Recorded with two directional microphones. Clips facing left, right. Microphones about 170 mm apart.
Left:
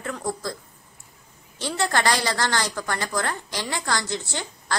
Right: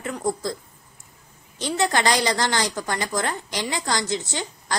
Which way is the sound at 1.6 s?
20° right (ahead or behind).